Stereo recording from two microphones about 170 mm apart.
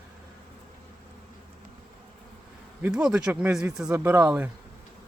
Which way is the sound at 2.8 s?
5° right (ahead or behind).